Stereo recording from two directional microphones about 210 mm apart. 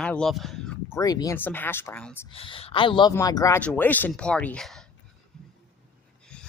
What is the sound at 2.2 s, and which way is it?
A man's voice, 25° left (ahead or behind).